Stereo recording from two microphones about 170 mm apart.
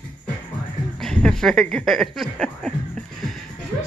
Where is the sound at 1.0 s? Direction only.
5° left (ahead or behind).